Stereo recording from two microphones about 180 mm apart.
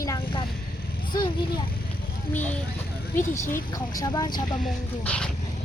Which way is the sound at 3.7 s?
20° left (ahead or behind).